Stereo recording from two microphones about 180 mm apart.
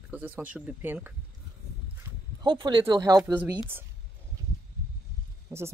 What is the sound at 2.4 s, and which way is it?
Speech, 25° right (ahead or behind).